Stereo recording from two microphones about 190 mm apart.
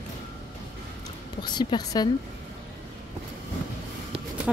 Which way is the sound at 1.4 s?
20° left (ahead or behind).